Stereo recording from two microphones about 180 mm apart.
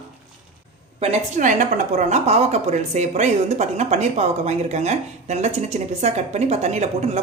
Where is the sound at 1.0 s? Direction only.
40° right (ahead or behind).